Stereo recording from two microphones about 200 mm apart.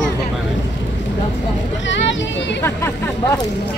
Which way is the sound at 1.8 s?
65° left (ahead or behind).